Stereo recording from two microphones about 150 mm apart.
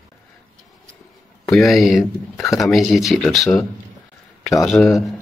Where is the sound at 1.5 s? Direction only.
Centre (ahead or behind).